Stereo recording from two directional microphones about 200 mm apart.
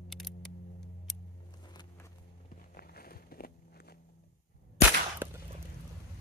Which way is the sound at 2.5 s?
50° left (ahead or behind).